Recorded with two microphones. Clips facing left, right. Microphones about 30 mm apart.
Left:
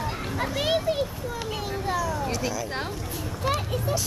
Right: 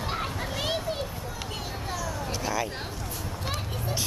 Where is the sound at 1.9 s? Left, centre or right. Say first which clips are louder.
Left 5 dB; left.